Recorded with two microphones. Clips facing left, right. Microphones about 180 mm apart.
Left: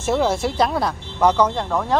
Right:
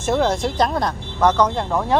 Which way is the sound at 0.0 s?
5° left (ahead or behind).